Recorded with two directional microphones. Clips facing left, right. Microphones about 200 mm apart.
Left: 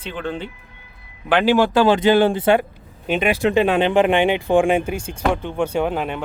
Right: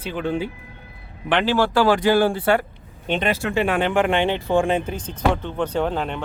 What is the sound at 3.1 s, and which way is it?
Speech, 10° left (ahead or behind).